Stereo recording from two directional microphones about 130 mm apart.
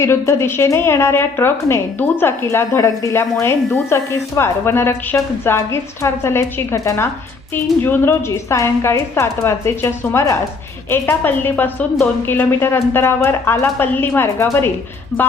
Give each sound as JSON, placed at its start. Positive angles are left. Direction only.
{"t": 0.0, "sound": "a woman's voice", "side_deg": 20}